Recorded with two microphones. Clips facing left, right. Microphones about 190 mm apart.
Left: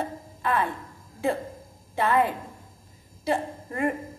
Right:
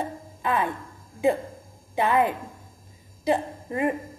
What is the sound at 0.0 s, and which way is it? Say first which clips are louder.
Music: even; 15° right (ahead or behind).